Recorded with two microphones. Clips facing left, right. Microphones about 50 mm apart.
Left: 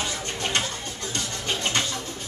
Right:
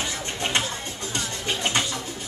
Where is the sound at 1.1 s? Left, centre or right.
Right.